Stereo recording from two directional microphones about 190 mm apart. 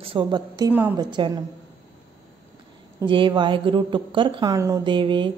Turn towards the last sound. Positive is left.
turn(degrees=-25)  # may be behind; listen again after turning